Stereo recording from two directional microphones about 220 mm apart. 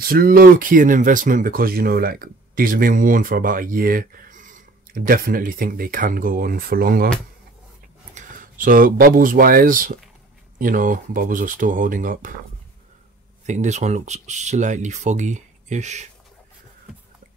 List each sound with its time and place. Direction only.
0.0 s speech: 40° right (ahead or behind)
8.1 s speech: 35° right (ahead or behind)
13.5 s speech: 35° right (ahead or behind)